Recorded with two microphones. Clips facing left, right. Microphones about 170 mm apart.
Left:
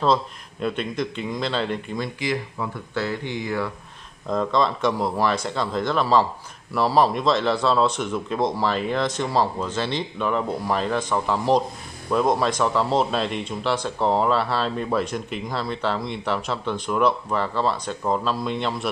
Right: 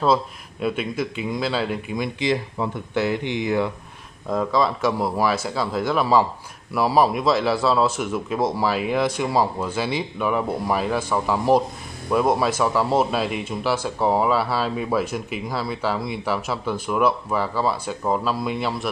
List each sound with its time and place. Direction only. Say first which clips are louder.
0.0 s speech: right 1 dB; 5° right (ahead or behind)
2.1 s speech: right 4 dB; 25° right (ahead or behind)
4.3 s a man's voice: right 1 dB; 5° right (ahead or behind)